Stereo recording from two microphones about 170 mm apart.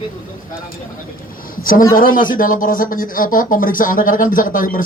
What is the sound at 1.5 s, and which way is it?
A woman's voice, 55° left (ahead or behind).